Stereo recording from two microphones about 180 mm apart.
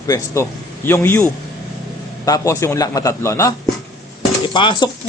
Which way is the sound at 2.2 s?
20° left (ahead or behind).